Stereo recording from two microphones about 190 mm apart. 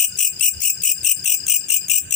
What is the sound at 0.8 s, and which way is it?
Cricket, 40° left (ahead or behind).